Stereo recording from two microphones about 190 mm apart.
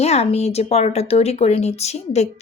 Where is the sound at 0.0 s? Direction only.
35° left (ahead or behind).